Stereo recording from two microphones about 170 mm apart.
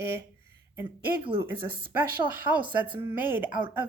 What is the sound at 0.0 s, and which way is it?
Speech, 15° right (ahead or behind).